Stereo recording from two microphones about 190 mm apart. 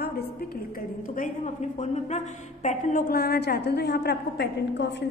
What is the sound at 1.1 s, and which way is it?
A woman's voice, 40° left (ahead or behind).